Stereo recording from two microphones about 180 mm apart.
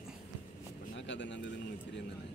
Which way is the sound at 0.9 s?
80° left.